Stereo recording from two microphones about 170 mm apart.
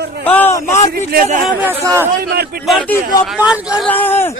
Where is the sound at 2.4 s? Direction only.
65° right (ahead or behind).